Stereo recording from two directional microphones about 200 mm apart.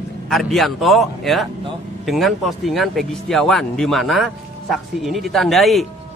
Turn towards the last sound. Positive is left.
turn(degrees=0)  # may be behind; listen again after turning